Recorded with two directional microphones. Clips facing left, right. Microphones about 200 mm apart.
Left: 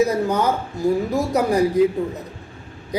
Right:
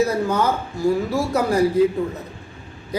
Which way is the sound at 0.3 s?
15° left (ahead or behind).